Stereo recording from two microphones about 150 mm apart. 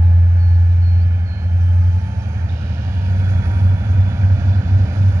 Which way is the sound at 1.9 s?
20° right (ahead or behind).